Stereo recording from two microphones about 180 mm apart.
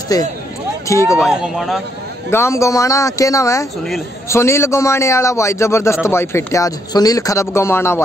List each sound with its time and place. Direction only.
0.1 s speech: 20° left (ahead or behind)
1.2 s speech: 5° right (ahead or behind)
2.3 s speech: 15° left (ahead or behind)